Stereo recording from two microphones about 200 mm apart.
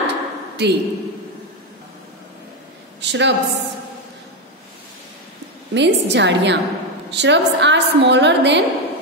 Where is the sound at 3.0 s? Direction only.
60° right (ahead or behind).